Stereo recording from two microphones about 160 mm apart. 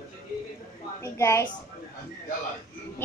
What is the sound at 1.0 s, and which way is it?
Speech, 15° left (ahead or behind).